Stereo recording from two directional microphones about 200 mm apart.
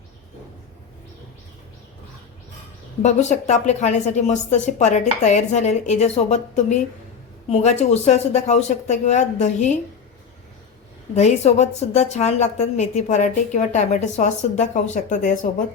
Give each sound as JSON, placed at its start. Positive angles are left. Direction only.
{"t": 3.0, "sound": "a woman's voice", "side_deg": 35}
{"t": 11.1, "sound": "a woman's voice", "side_deg": 35}